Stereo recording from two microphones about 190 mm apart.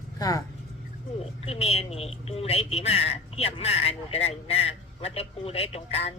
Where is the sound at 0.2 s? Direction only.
20° left (ahead or behind).